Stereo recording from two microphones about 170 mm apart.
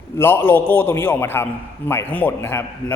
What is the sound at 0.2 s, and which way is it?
Speech, 15° left (ahead or behind).